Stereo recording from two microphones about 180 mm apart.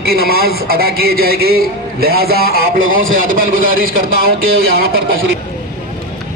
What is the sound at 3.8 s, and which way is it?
Speech, 55° right (ahead or behind).